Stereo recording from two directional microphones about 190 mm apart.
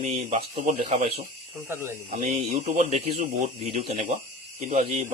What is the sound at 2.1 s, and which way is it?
A man's voice, 40° right (ahead or behind).